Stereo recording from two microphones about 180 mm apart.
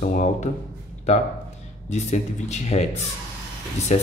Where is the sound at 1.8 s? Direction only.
40° left (ahead or behind).